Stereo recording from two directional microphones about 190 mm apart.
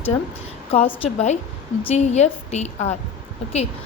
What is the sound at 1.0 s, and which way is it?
A woman's voice, 35° left (ahead or behind).